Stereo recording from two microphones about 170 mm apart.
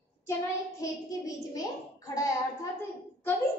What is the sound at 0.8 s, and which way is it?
A woman's voice, 20° left (ahead or behind).